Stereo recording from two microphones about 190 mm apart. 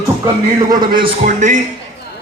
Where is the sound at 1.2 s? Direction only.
40° right (ahead or behind).